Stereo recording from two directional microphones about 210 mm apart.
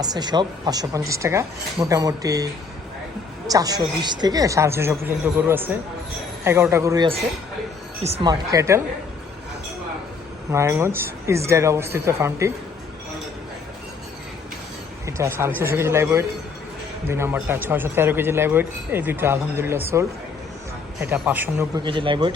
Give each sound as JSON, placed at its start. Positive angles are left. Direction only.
{"t": 0.0, "sound": "a man's voice", "side_deg": -20}
{"t": 3.5, "sound": "a man's voice", "side_deg": -15}
{"t": 10.5, "sound": "a man's voice", "side_deg": -10}
{"t": 15.0, "sound": "a man's voice", "side_deg": -15}
{"t": 21.8, "sound": "speech", "side_deg": -25}